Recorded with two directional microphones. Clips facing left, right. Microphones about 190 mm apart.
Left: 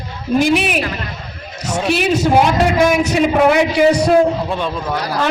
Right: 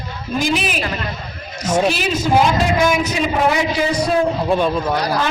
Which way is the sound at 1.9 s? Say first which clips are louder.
Left 4 dB; 65° left (ahead or behind).